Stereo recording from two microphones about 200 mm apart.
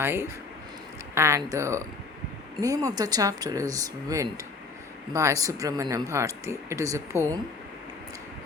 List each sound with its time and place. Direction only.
0.0 s speech: 10° right (ahead or behind)